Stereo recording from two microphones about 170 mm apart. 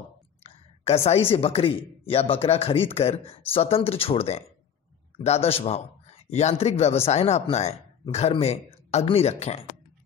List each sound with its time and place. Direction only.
0.4 s a woman's voice: 40° left (ahead or behind)